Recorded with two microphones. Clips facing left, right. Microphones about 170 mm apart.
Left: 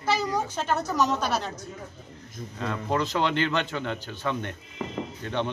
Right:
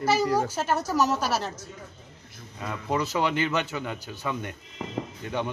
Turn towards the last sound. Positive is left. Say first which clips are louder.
# left 1 dB
turn(degrees=-10)  # may be behind; listen again after turning